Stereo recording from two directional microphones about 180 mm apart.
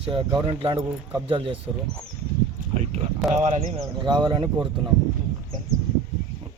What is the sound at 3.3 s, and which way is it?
Speech, 40° right (ahead or behind).